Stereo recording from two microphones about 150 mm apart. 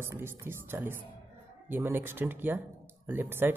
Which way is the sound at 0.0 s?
15° right (ahead or behind).